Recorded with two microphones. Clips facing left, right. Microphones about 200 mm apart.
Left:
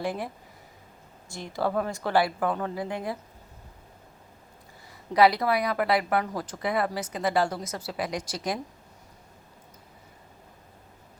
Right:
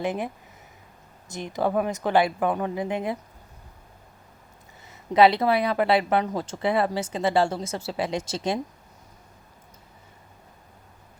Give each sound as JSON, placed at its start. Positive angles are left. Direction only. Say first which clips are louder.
{"t": 0.0, "sound": "a woman's voice", "louder": "right 3 dB", "side_deg": -20}
{"t": 1.3, "sound": "a woman's voice", "louder": "right 3 dB", "side_deg": -20}
{"t": 4.9, "sound": "a woman's voice", "louder": "right 3 dB", "side_deg": -25}